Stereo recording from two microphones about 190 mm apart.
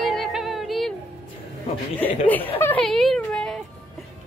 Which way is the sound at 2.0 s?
10° left (ahead or behind).